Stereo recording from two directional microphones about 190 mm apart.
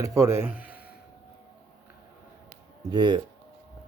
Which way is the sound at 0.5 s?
50° left (ahead or behind).